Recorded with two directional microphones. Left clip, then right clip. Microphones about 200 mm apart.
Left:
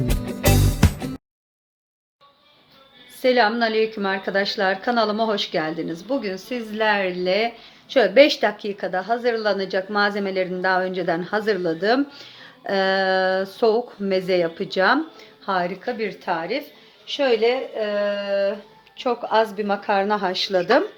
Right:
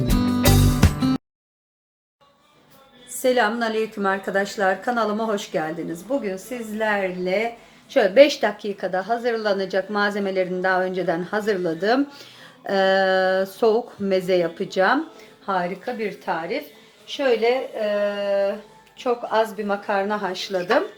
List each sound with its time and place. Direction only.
0.0 s music: centre (ahead or behind)
3.2 s a woman's voice: 15° left (ahead or behind); by 7.4 s 45° left (ahead or behind)
7.9 s speech: 20° left (ahead or behind)
15.4 s a woman's voice: 35° left (ahead or behind)